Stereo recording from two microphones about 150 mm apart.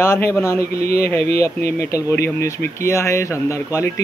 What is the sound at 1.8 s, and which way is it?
Speech, 20° left (ahead or behind).